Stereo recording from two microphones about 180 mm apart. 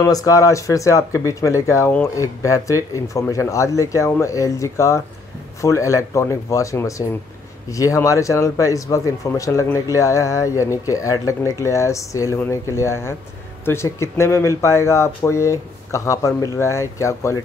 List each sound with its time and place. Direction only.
0.0 s speech: 20° left (ahead or behind)